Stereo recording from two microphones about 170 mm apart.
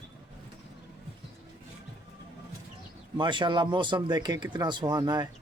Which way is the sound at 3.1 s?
25° right (ahead or behind).